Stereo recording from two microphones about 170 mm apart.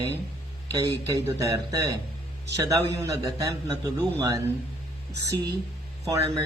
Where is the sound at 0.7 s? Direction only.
20° right (ahead or behind).